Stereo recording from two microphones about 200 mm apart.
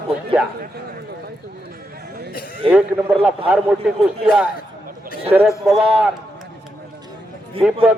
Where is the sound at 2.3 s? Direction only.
45° left (ahead or behind).